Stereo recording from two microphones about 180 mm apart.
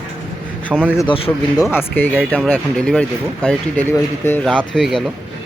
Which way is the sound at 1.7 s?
10° left (ahead or behind).